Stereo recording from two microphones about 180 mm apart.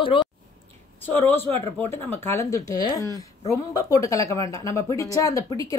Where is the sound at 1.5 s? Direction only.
15° left (ahead or behind).